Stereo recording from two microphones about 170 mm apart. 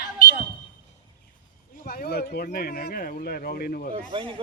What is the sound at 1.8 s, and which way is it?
Speech, 60° left (ahead or behind).